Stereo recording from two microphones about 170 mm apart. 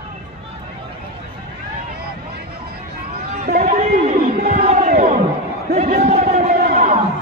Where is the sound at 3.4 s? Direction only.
40° right (ahead or behind).